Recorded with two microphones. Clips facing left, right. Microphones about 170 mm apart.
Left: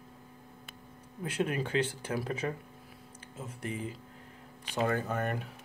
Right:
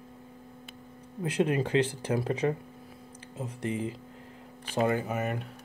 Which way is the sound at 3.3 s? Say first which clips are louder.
Right 6 dB; 30° right (ahead or behind).